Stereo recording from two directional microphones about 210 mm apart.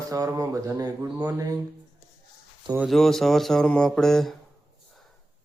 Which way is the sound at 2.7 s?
5° right (ahead or behind).